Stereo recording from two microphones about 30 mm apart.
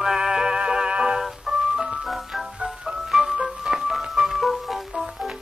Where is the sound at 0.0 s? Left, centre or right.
Centre.